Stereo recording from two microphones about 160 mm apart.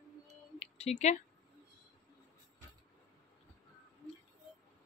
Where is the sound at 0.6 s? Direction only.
40° left (ahead or behind).